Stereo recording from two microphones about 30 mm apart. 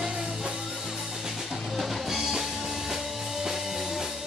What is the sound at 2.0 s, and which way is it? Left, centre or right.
Music, centre.